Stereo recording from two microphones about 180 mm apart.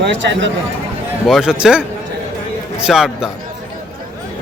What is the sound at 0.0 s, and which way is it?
Speech, 80° right.